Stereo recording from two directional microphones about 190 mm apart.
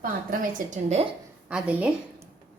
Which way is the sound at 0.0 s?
45° right (ahead or behind).